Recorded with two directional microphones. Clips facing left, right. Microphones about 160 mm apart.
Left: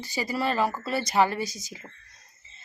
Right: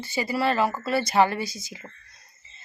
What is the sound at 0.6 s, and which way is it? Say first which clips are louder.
Speech: right 2 dB; 10° right (ahead or behind).